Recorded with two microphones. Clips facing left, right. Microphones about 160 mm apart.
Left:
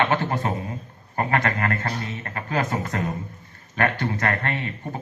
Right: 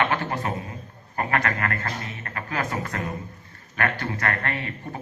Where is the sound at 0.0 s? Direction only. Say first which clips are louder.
Left 2 dB; 25° left (ahead or behind).